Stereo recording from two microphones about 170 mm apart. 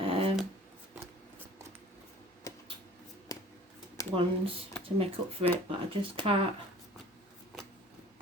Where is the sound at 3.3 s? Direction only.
20° left (ahead or behind).